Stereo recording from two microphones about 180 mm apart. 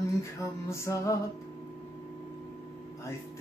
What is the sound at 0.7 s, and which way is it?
Music, 15° left (ahead or behind).